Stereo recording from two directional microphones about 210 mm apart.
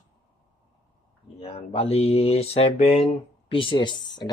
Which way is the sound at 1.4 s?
25° left (ahead or behind).